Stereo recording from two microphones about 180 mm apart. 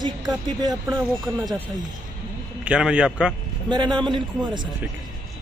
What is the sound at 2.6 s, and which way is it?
Speech, 5° right (ahead or behind).